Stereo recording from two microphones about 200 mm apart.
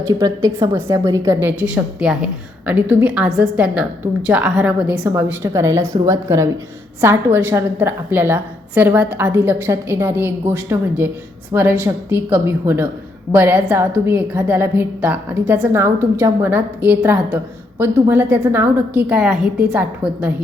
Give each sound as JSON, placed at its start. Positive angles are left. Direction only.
{"t": 0.0, "sound": "a woman's voice", "side_deg": -15}